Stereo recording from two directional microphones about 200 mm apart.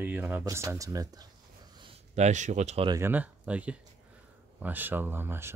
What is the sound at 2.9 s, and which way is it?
Speech, 10° right (ahead or behind).